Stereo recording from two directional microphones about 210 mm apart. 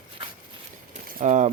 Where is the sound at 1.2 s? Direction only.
35° right (ahead or behind).